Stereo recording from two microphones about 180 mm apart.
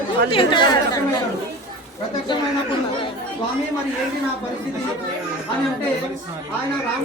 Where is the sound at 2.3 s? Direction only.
30° left (ahead or behind).